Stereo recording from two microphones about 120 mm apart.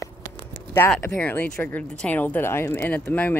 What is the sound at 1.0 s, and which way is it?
Speech, 15° left (ahead or behind).